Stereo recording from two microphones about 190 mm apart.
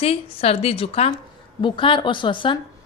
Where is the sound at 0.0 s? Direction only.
30° left (ahead or behind).